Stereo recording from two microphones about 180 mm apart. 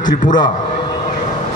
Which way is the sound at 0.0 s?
45° left (ahead or behind).